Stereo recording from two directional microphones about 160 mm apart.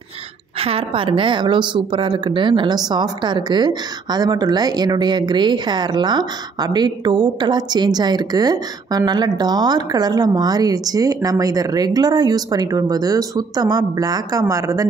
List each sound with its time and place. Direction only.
0.6 s a woman's voice: 35° right (ahead or behind); by 14.9 s 20° right (ahead or behind)